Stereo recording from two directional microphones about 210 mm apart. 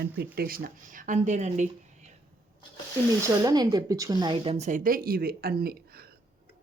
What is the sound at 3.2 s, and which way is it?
Speech, 20° right (ahead or behind).